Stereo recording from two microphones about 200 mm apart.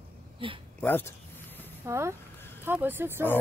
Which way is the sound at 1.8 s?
15° right (ahead or behind).